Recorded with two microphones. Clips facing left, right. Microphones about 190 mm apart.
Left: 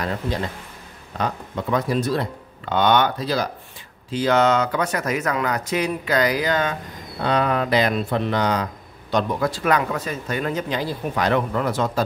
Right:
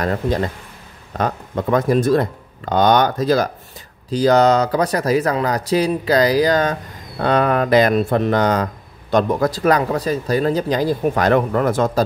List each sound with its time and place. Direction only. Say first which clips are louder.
0.0 s speech: right 6 dB; 45° right (ahead or behind)